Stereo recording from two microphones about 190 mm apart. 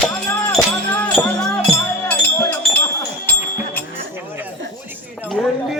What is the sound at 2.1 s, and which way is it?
Wind chime, 10° left (ahead or behind).